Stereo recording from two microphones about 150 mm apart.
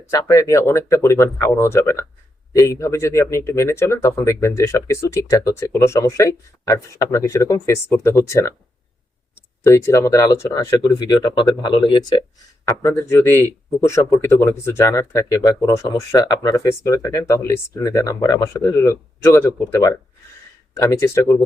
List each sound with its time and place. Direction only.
0.1 s speech: 20° left (ahead or behind)
9.6 s speech: 20° left (ahead or behind)